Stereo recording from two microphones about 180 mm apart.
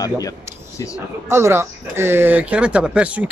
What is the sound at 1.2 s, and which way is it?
Speech, 15° right (ahead or behind).